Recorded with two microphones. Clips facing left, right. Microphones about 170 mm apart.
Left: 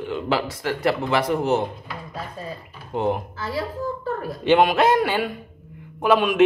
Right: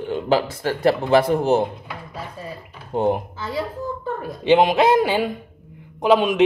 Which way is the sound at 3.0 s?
25° right (ahead or behind).